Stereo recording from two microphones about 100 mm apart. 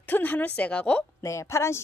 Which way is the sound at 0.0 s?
20° left (ahead or behind).